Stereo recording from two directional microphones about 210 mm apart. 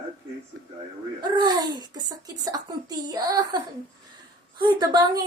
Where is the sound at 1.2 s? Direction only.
20° right (ahead or behind).